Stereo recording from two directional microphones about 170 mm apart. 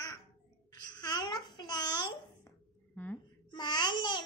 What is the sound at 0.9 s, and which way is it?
Babbling, 25° left (ahead or behind).